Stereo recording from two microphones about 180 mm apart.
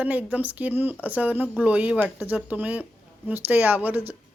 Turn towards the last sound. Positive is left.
turn(degrees=-10)  # may be behind; listen again after turning